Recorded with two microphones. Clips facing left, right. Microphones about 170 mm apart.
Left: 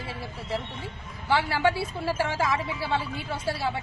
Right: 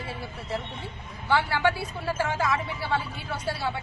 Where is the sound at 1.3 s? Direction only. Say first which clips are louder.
Even; 25° left (ahead or behind).